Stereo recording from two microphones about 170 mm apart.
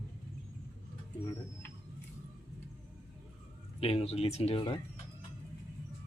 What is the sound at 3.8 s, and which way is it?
Speech, 35° left (ahead or behind).